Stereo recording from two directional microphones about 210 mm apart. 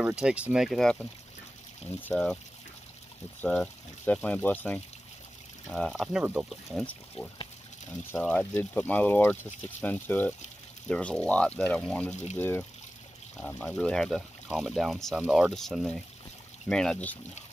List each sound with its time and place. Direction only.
0.0 s speech: 5° right (ahead or behind)
3.3 s speech: 5° left (ahead or behind)
6.2 s speech: 10° right (ahead or behind)
7.2 s speech: 30° left (ahead or behind)
8.1 s speech: 5° left (ahead or behind)
12.1 s speech: 35° left (ahead or behind)
12.4 s speech: 10° left (ahead or behind)